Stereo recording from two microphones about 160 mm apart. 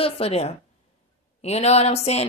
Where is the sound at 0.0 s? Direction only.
40° left (ahead or behind).